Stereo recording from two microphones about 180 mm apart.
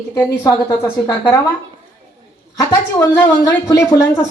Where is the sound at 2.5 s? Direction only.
15° left (ahead or behind).